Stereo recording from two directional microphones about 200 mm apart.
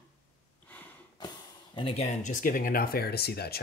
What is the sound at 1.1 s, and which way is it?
Speech, 20° left (ahead or behind).